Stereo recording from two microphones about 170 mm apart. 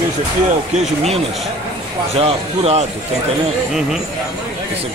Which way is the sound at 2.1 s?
35° right (ahead or behind).